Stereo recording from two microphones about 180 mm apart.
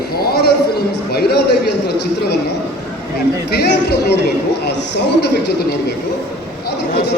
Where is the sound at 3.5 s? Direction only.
70° left (ahead or behind).